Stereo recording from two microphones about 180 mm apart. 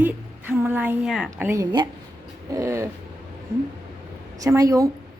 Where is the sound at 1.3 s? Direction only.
15° right (ahead or behind).